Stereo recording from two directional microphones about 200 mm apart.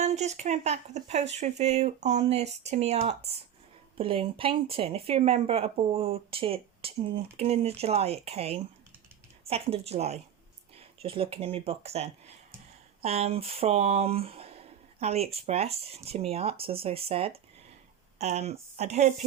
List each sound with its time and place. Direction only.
0.0 s speech: 35° right (ahead or behind)